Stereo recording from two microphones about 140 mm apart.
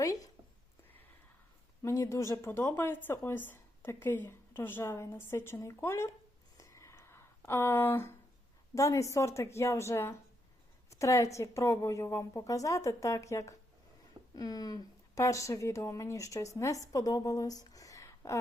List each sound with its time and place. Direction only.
0.0 s speech: 25° left (ahead or behind)
1.8 s speech: 20° left (ahead or behind)
6.6 s a sound: 20° left (ahead or behind)
8.7 s a woman's voice: 20° left (ahead or behind)